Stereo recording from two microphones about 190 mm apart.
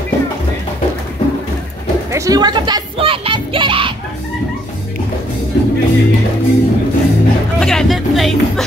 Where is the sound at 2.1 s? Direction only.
20° right (ahead or behind).